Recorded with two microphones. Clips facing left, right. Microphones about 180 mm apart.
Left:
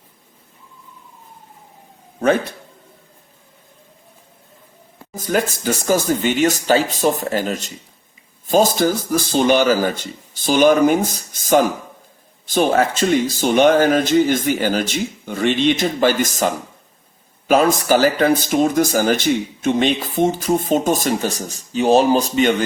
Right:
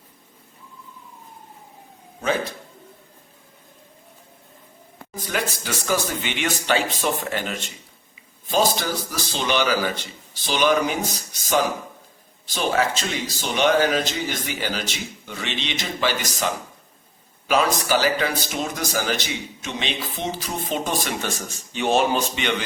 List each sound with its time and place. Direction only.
5.1 s speech: 45° left (ahead or behind)
17.5 s speech: 50° left (ahead or behind)